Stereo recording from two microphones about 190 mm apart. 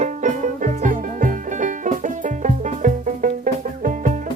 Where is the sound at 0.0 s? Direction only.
40° right (ahead or behind).